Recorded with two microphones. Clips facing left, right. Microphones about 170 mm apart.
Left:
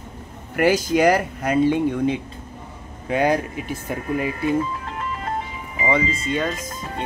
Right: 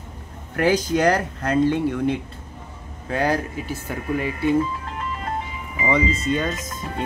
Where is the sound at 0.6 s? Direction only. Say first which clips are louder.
Left 2 dB; 10° left (ahead or behind).